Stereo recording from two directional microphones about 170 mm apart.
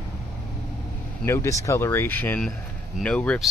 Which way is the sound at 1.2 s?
15° left (ahead or behind).